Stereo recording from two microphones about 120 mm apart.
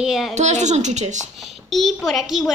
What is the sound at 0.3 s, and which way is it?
A woman's voice, 75° right (ahead or behind).